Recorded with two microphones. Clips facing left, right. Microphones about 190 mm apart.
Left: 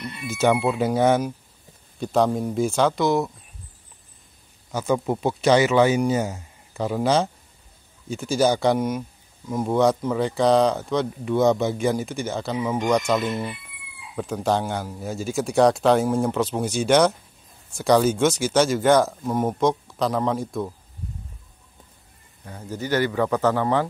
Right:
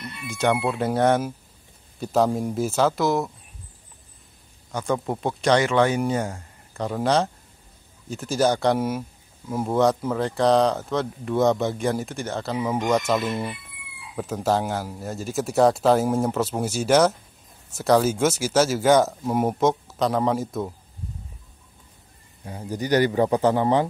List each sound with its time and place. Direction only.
0.3 s speech: 5° left (ahead or behind)
4.7 s a man's voice: 5° left (ahead or behind)
22.4 s a man's voice: 15° right (ahead or behind)